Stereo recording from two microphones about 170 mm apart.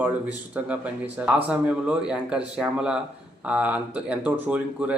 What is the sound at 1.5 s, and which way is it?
Speech, 5° right (ahead or behind).